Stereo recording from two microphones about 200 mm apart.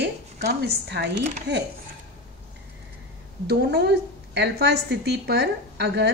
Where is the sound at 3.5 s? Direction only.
55° right (ahead or behind).